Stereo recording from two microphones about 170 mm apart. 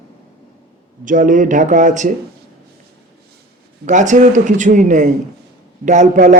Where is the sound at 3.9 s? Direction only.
45° right (ahead or behind).